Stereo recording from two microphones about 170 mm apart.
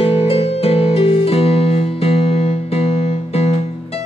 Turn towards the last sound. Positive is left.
turn(degrees=40)  # may be behind; listen again after turning